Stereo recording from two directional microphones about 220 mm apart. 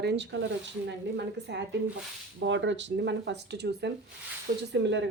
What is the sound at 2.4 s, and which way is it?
Speech, 55° right (ahead or behind).